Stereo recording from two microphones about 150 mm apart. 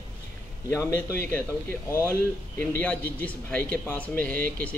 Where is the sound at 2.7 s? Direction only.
10° left (ahead or behind).